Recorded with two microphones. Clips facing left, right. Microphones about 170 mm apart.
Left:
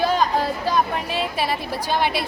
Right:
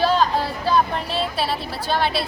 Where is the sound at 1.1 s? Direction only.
15° left (ahead or behind).